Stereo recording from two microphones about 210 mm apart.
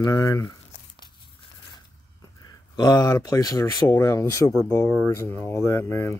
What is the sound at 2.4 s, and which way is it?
Speech, 20° left (ahead or behind).